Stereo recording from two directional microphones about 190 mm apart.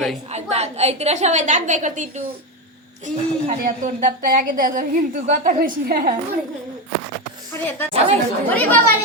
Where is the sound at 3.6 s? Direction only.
45° right (ahead or behind).